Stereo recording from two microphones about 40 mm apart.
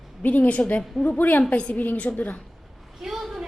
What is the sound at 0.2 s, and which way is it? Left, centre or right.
A woman's voice, left.